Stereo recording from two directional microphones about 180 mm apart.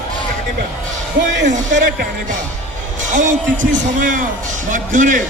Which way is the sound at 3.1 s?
45° right (ahead or behind).